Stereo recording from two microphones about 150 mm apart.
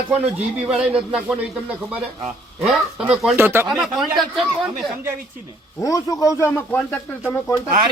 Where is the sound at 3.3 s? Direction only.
15° right (ahead or behind).